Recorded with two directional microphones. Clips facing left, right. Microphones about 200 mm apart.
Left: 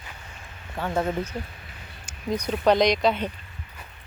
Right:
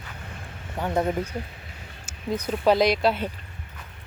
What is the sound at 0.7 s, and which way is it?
Speech, 15° right (ahead or behind).